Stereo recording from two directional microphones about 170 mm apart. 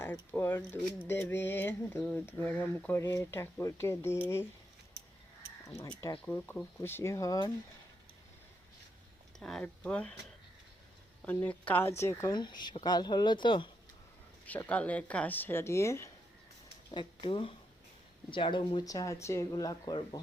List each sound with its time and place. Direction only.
0.0 s speech: 10° left (ahead or behind)
5.6 s speech: 20° left (ahead or behind)
9.4 s speech: 5° left (ahead or behind)
11.3 s a woman's voice: 10° left (ahead or behind); by 13.7 s 30° left (ahead or behind)
14.4 s speech: 10° left (ahead or behind)
16.9 s a woman's voice: 25° left (ahead or behind)
18.9 s a woman's voice: 20° left (ahead or behind)